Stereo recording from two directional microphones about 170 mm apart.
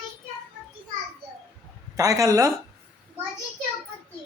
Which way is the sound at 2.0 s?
20° right (ahead or behind).